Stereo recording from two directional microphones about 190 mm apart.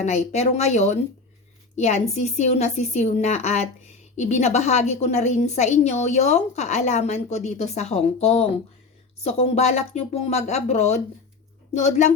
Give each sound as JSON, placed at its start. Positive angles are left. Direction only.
{"t": 0.0, "sound": "a woman's voice", "side_deg": 35}